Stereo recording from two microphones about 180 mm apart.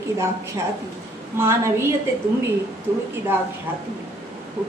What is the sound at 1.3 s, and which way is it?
Speech, 15° right (ahead or behind).